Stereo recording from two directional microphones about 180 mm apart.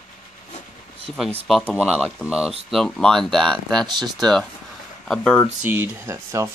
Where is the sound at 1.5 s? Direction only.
10° left (ahead or behind).